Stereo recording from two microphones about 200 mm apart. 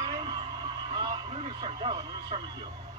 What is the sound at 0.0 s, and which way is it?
Vehicle, 25° right (ahead or behind).